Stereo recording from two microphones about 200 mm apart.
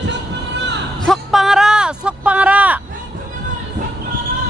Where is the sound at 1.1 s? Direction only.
Centre (ahead or behind).